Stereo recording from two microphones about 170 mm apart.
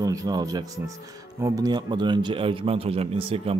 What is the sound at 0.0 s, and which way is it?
A man's voice, 20° right (ahead or behind).